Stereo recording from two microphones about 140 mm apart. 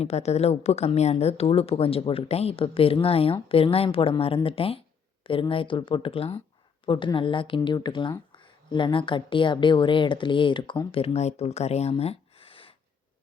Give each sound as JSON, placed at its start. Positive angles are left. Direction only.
{"t": 0.0, "sound": "a woman's voice", "side_deg": 50}